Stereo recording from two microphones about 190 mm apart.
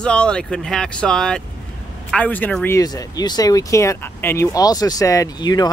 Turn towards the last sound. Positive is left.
turn(degrees=20)  # may be behind; listen again after turning